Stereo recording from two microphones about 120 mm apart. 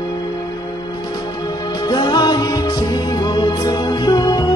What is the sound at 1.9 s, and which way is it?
Music, 40° left (ahead or behind).